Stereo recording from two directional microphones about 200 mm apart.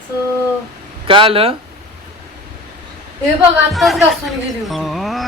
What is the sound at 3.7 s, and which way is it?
Speech, centre (ahead or behind).